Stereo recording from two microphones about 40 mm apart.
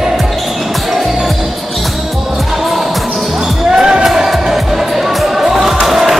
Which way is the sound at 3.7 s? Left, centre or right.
Centre.